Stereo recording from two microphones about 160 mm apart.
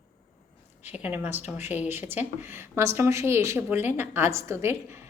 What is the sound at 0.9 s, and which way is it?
A woman's voice, 10° right (ahead or behind).